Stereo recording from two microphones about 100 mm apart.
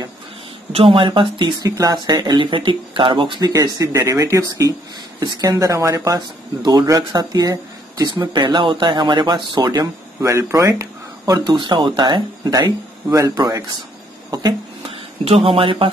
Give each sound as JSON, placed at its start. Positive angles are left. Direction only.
{"t": 0.7, "sound": "speech", "side_deg": -65}
{"t": 1.8, "sound": "speech", "side_deg": -40}
{"t": 6.1, "sound": "speech", "side_deg": -45}
{"t": 8.1, "sound": "speech", "side_deg": -50}
{"t": 14.9, "sound": "speech", "side_deg": -75}